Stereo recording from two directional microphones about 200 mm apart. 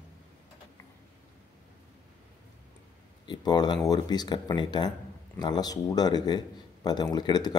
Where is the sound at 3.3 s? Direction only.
20° left (ahead or behind).